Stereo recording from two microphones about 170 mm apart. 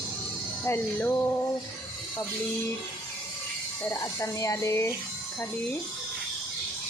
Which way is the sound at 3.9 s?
20° left (ahead or behind).